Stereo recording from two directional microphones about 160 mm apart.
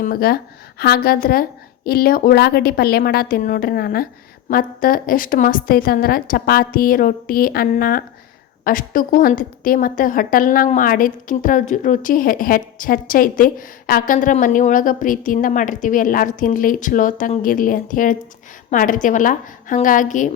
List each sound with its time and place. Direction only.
0.0 s a woman's voice: 70° left (ahead or behind); by 20.3 s 55° left (ahead or behind)